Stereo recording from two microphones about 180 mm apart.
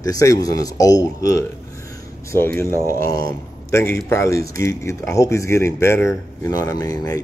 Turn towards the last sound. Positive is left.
turn(degrees=20)  # may be behind; listen again after turning